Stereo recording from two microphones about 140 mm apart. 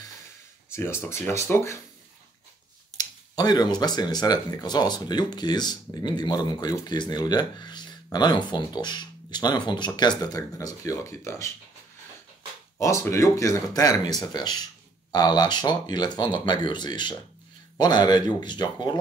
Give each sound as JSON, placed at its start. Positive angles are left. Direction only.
{"t": 0.7, "sound": "speech", "side_deg": 20}
{"t": 3.0, "sound": "speech", "side_deg": 30}
{"t": 12.7, "sound": "speech", "side_deg": 20}